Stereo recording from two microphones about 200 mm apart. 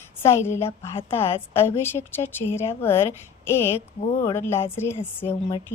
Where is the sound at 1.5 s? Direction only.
10° left (ahead or behind).